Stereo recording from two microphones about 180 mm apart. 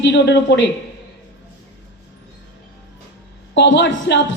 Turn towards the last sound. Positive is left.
turn(degrees=90)